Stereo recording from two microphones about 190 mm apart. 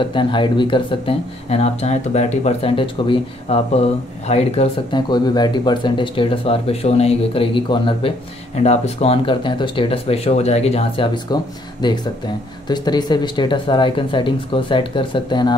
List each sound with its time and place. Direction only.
0.0 s speech: 25° left (ahead or behind)
4.9 s speech: 20° left (ahead or behind)
11.3 s speech: 20° left (ahead or behind)